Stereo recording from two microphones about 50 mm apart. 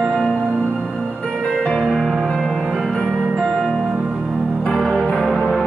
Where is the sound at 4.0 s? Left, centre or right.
Centre.